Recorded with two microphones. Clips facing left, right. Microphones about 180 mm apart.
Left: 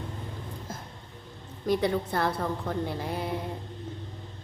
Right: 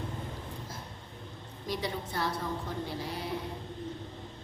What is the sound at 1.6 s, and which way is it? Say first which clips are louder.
A woman's voice: left 9 dB; 55° left (ahead or behind).